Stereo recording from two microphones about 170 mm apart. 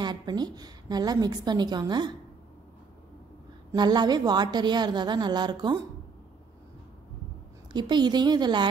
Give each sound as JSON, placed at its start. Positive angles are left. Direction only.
{"t": 0.0, "sound": "a woman's voice", "side_deg": -25}
{"t": 3.7, "sound": "a woman's voice", "side_deg": -25}
{"t": 7.7, "sound": "a woman's voice", "side_deg": -25}